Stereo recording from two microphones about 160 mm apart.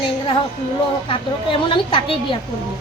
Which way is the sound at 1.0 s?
30° left (ahead or behind).